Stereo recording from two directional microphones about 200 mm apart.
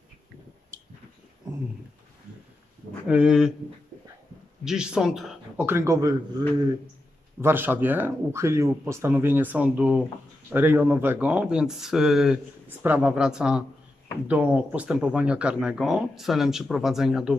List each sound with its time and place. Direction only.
3.1 s speech: 5° right (ahead or behind)
4.6 s speech: 5° right (ahead or behind)
5.8 s speech: 15° right (ahead or behind)
7.4 s speech: 10° right (ahead or behind)